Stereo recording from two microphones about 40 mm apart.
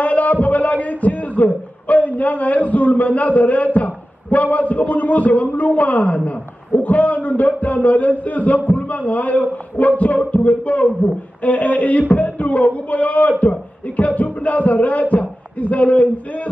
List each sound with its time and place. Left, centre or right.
0.0 s a man's voice: left